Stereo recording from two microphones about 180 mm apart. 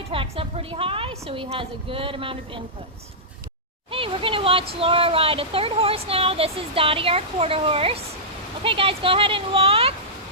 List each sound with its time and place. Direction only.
0.1 s a woman's voice: 30° right (ahead or behind)
3.9 s speech: 30° right (ahead or behind)